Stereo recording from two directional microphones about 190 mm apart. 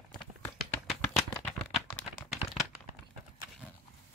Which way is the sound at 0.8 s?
5° left (ahead or behind).